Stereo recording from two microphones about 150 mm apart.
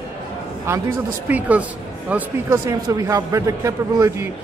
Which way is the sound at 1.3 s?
10° right (ahead or behind).